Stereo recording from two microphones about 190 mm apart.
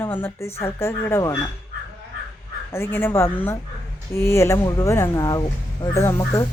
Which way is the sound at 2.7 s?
10° left (ahead or behind).